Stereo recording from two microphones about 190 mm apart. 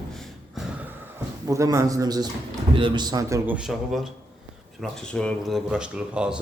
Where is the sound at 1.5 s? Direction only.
15° right (ahead or behind).